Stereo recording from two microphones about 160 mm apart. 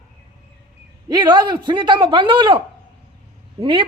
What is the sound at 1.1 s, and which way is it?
A woman's voice, 25° right (ahead or behind).